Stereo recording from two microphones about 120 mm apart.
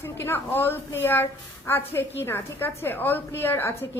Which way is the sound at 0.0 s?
20° left (ahead or behind).